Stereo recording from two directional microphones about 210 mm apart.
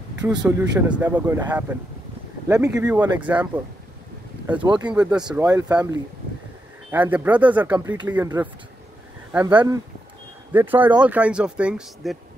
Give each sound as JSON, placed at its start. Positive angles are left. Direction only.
{"t": 0.4, "sound": "speech", "side_deg": -10}
{"t": 4.6, "sound": "speech", "side_deg": -20}
{"t": 4.8, "sound": "speech", "side_deg": -5}